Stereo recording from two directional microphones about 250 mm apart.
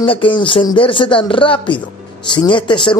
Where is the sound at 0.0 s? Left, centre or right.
Left.